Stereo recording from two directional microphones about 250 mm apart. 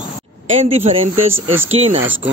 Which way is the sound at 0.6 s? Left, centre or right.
Right.